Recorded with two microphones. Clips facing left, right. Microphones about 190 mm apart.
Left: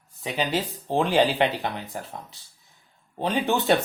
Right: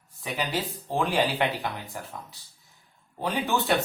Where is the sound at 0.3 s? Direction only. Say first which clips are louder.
Left 4 dB; 25° left (ahead or behind).